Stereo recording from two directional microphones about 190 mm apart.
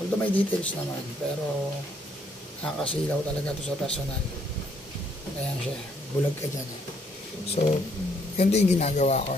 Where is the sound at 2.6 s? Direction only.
5° left (ahead or behind).